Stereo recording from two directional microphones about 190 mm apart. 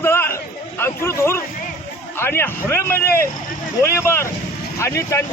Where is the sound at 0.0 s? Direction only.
10° left (ahead or behind).